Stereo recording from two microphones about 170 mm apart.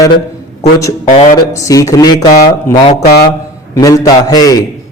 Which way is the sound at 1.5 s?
20° left (ahead or behind).